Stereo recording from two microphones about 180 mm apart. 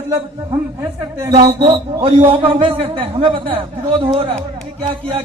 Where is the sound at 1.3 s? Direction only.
30° right (ahead or behind).